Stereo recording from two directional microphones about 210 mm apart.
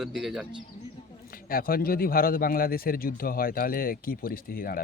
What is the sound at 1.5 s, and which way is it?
A man's voice, 45° left (ahead or behind).